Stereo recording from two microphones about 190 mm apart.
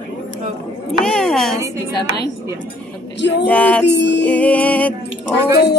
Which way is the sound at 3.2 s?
65° left (ahead or behind).